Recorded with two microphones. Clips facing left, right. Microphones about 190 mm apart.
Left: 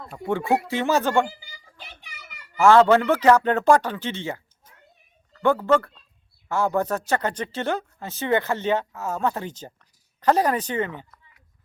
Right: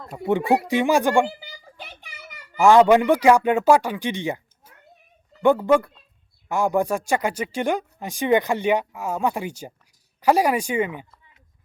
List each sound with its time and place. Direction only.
0.1 s speech: 15° right (ahead or behind)
1.3 s a child's voice: 65° right (ahead or behind)
2.6 s speech: 15° right (ahead or behind)